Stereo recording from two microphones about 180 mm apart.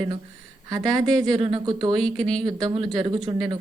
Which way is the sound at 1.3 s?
25° right (ahead or behind).